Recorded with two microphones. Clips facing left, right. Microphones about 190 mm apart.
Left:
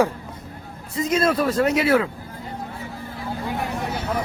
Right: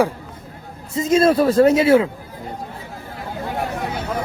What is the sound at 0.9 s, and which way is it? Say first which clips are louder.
Speech: right 5 dB; 25° right (ahead or behind).